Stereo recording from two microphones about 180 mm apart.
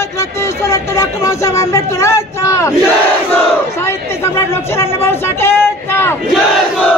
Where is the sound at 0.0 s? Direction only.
15° left (ahead or behind).